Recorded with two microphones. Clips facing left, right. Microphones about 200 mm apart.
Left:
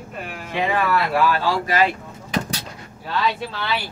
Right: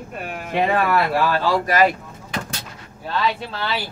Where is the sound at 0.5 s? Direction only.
50° right (ahead or behind).